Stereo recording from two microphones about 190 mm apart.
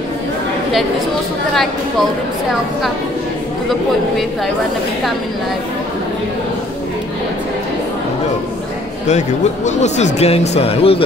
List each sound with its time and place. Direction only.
1.5 s speech: centre (ahead or behind)
9.0 s speech: 35° left (ahead or behind)